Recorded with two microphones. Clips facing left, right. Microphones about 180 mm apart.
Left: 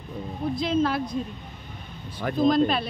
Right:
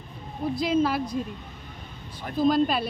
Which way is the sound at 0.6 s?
5° right (ahead or behind).